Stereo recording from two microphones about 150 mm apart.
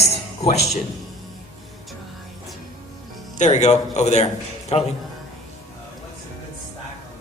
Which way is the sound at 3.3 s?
50° left (ahead or behind).